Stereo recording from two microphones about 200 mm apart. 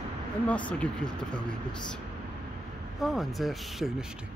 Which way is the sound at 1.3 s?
5° left (ahead or behind).